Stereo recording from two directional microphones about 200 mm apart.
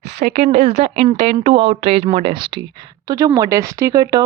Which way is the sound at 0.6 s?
55° right (ahead or behind).